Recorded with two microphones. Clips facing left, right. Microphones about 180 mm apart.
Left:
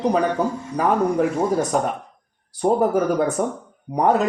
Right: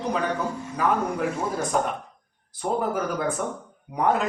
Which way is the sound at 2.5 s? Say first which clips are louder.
Left 8 dB; 40° left (ahead or behind).